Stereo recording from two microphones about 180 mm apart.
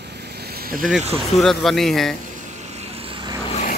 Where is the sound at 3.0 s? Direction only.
25° right (ahead or behind).